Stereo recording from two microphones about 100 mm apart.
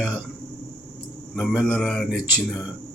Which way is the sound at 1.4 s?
10° left (ahead or behind).